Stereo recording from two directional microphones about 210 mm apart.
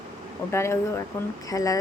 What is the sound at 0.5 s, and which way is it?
Speech, 15° left (ahead or behind).